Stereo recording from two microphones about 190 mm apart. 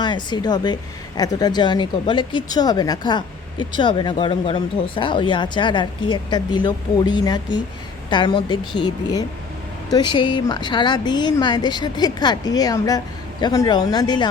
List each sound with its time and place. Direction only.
0.0 s a woman's voice: 25° left (ahead or behind)